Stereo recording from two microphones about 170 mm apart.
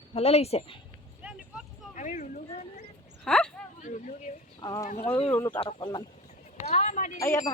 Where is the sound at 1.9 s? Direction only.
45° left (ahead or behind).